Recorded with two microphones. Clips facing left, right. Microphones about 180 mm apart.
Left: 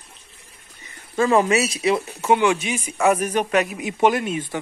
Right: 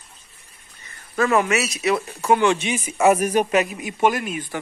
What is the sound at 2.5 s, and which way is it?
Speech, centre (ahead or behind).